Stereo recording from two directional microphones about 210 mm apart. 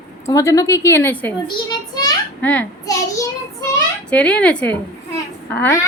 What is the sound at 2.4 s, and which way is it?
Speech, 5° left (ahead or behind).